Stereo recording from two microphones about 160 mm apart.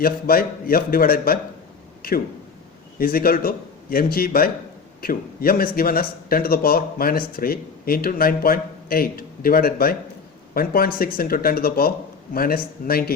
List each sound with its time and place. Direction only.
0.0 s a man's voice: 65° left (ahead or behind)
2.0 s a sound: 70° left (ahead or behind)
3.0 s speech: 65° left (ahead or behind)